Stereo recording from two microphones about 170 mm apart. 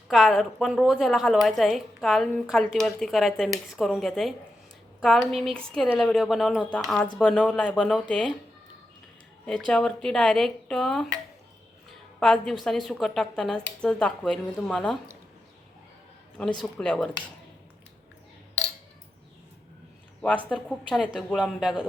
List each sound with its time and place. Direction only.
0.1 s a woman's voice: centre (ahead or behind)
9.5 s a woman's voice: 5° left (ahead or behind)
12.2 s a woman's voice: centre (ahead or behind)
16.4 s a woman's voice: 5° left (ahead or behind)
20.2 s a woman's voice: 5° left (ahead or behind)